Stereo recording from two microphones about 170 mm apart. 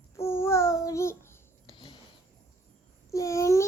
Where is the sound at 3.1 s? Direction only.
20° left (ahead or behind).